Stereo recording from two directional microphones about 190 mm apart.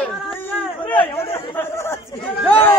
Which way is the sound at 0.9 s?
10° left (ahead or behind).